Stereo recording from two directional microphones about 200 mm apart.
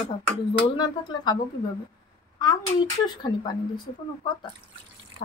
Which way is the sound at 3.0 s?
20° left (ahead or behind).